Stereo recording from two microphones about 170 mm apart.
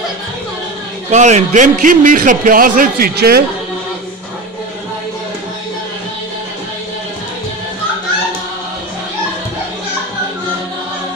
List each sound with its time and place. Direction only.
1.1 s a man's voice: 45° right (ahead or behind); by 3.4 s 65° right (ahead or behind)